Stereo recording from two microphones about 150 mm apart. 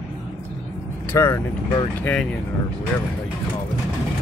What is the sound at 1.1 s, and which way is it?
Speech, 20° left (ahead or behind).